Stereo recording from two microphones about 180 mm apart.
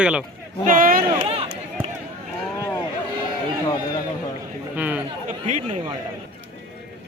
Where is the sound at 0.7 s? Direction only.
50° right (ahead or behind).